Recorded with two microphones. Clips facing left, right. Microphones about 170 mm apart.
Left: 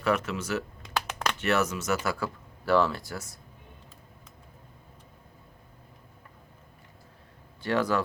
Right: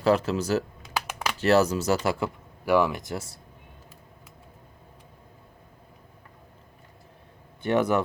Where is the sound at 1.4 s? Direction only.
35° right (ahead or behind).